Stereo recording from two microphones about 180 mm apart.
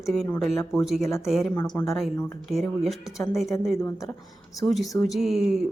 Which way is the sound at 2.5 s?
Centre (ahead or behind).